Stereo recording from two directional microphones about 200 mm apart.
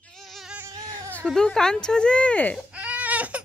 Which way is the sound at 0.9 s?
5° left (ahead or behind).